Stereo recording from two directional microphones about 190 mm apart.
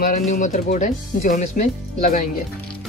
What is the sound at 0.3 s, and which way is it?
Speech, 40° left (ahead or behind).